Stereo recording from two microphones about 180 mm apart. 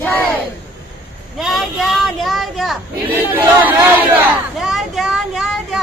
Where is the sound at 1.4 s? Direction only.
Centre (ahead or behind).